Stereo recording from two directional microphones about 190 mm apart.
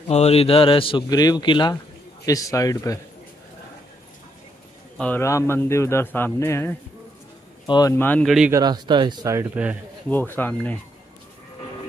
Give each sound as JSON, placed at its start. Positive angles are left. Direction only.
{"t": 0.1, "sound": "a man's voice", "side_deg": 35}
{"t": 4.9, "sound": "a man's voice", "side_deg": 10}
{"t": 8.5, "sound": "speech", "side_deg": -20}
{"t": 10.0, "sound": "a man's voice", "side_deg": 10}